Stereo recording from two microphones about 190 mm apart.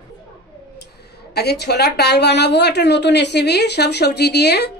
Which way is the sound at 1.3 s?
60° left (ahead or behind).